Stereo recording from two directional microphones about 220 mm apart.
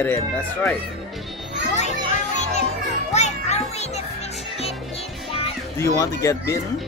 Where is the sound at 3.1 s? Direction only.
30° left (ahead or behind).